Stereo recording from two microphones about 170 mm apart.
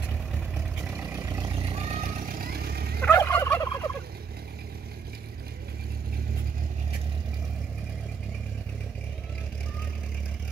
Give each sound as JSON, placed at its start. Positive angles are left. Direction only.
{"t": 0.9, "sound": "vehicle", "side_deg": -15}
{"t": 1.4, "sound": "vehicle", "side_deg": -30}
{"t": 2.0, "sound": "vehicle", "side_deg": -55}
{"t": 3.0, "sound": "fowl", "side_deg": 15}